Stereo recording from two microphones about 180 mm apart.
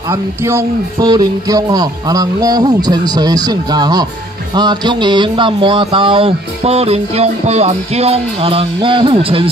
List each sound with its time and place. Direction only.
0.1 s speech: 15° right (ahead or behind); by 9.5 s 30° right (ahead or behind)